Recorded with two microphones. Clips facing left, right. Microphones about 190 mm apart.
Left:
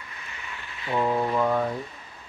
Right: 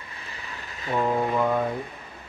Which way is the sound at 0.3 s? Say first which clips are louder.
Right 1 dB; 40° right (ahead or behind).